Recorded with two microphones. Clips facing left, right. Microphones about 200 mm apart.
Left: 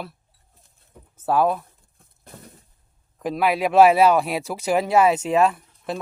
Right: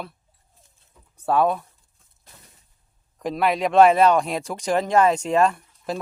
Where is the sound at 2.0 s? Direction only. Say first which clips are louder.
Left 10 dB; 55° left (ahead or behind).